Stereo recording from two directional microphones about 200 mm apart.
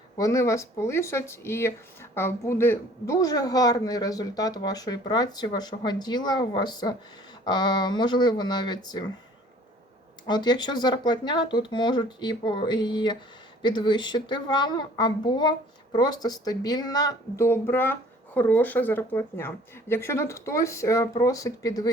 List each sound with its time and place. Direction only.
0.2 s speech: 15° left (ahead or behind)
10.2 s speech: 20° left (ahead or behind)